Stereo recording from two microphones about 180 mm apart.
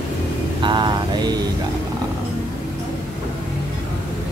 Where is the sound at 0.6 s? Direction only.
25° right (ahead or behind).